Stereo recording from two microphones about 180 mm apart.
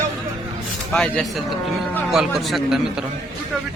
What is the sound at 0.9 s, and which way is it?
A man's voice, 5° left (ahead or behind).